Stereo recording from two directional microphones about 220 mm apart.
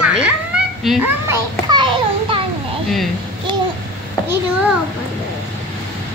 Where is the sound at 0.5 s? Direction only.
5° right (ahead or behind).